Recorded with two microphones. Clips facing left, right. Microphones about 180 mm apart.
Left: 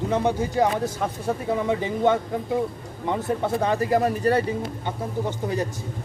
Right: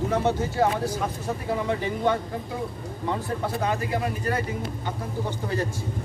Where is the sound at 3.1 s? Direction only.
30° left (ahead or behind).